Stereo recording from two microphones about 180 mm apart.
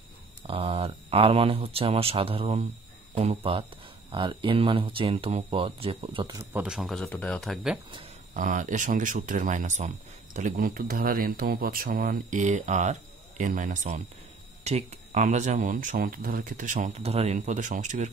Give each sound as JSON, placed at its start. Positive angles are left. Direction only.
{"t": 0.5, "sound": "speech", "side_deg": -30}
{"t": 6.3, "sound": "speech", "side_deg": -10}
{"t": 8.4, "sound": "speech", "side_deg": -45}